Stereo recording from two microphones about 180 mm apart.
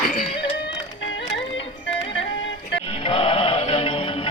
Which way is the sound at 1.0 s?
90° left.